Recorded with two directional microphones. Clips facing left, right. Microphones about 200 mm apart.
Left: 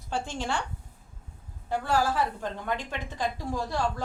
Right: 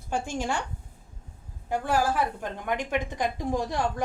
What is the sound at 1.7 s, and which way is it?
A woman's voice, 15° right (ahead or behind).